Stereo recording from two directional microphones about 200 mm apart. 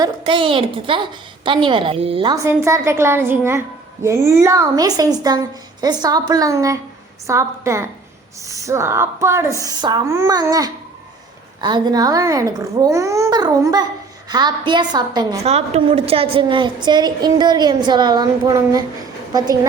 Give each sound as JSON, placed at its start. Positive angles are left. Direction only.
{"t": 0.0, "sound": "a woman's voice", "side_deg": -25}
{"t": 15.4, "sound": "a woman's voice", "side_deg": -30}